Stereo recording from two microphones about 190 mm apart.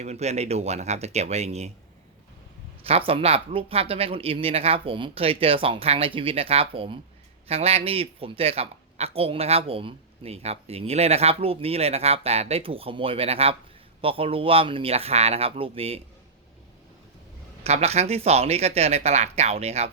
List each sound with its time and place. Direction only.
0.0 s speech: 35° right (ahead or behind)
2.8 s speech: 30° right (ahead or behind)
17.6 s speech: 35° right (ahead or behind)